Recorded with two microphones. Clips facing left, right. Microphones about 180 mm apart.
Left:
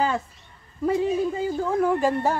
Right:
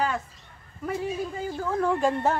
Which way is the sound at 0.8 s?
20° left (ahead or behind).